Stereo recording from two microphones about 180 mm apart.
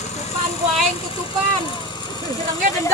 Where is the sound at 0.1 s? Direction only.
40° left (ahead or behind).